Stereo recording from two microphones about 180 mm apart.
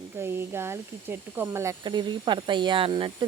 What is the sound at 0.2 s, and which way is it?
Speech, 15° right (ahead or behind).